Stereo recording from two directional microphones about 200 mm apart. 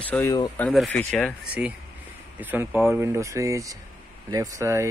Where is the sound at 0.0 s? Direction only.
10° left (ahead or behind).